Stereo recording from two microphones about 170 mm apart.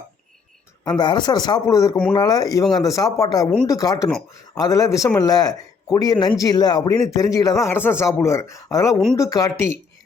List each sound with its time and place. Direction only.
0.9 s speech: 25° left (ahead or behind)